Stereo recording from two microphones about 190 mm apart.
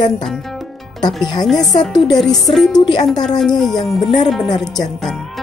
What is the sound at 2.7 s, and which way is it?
Speech, 25° left (ahead or behind).